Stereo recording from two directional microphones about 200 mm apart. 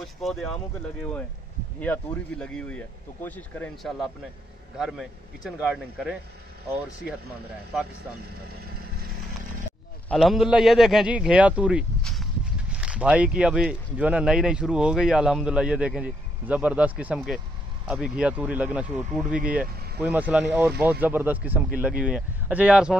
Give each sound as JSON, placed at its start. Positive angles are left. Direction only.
{"t": 0.0, "sound": "speech", "side_deg": 0}
{"t": 1.8, "sound": "speech", "side_deg": 5}
{"t": 10.0, "sound": "speech", "side_deg": 0}